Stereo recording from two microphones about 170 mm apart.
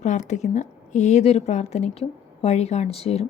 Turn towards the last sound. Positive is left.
turn(degrees=35)  # may be behind; listen again after turning